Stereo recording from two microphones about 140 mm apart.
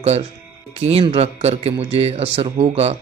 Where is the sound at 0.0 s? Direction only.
45° right (ahead or behind).